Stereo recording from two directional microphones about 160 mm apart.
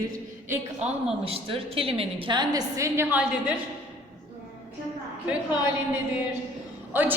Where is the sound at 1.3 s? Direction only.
35° right (ahead or behind); by 3.2 s 15° right (ahead or behind).